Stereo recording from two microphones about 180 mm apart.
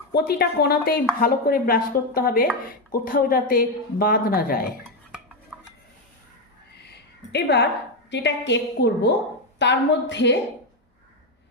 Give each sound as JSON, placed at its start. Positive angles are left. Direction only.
{"t": 0.1, "sound": "a woman's voice", "side_deg": 60}
{"t": 7.3, "sound": "a woman's voice", "side_deg": 65}